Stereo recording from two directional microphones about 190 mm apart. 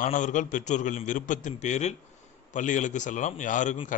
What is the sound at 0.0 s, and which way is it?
A man's voice, 40° left (ahead or behind).